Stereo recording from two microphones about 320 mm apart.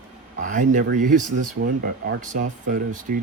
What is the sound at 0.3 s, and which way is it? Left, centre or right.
Speech, right.